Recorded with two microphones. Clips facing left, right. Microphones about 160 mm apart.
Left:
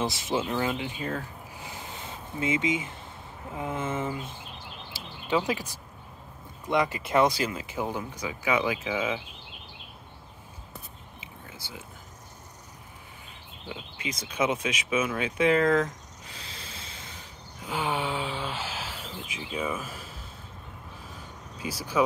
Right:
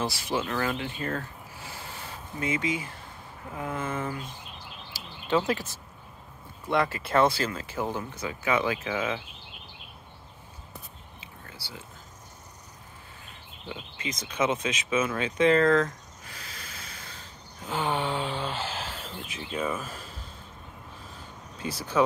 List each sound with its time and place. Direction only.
0.0 s speech: 20° left (ahead or behind)
5.3 s speech: 15° left (ahead or behind)
6.7 s speech: 15° left (ahead or behind)
13.7 s speech: 10° left (ahead or behind)
16.3 s a sound: 25° left (ahead or behind)
17.6 s a sound: 10° left (ahead or behind)
21.5 s speech: 10° left (ahead or behind)